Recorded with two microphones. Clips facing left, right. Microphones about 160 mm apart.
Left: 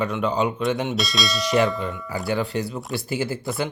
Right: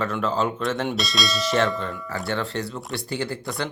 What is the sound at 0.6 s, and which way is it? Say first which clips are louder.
Bell: left 2 dB; centre (ahead or behind).